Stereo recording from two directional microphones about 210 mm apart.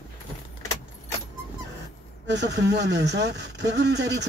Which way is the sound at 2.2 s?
55° right (ahead or behind).